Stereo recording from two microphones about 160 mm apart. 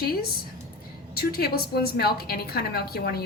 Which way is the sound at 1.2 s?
75° left (ahead or behind).